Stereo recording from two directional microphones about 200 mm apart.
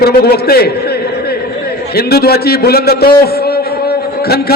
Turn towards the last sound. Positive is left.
turn(degrees=50)  # may be behind; listen again after turning